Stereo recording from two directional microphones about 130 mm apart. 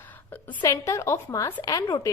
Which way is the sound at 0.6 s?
25° left (ahead or behind).